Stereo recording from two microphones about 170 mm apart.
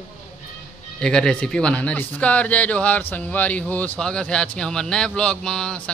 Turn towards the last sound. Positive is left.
turn(degrees=5)  # may be behind; listen again after turning